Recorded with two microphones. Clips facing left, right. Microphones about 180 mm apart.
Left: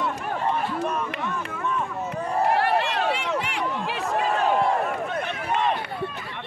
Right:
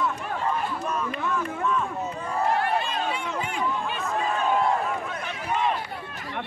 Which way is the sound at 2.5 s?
75° left (ahead or behind).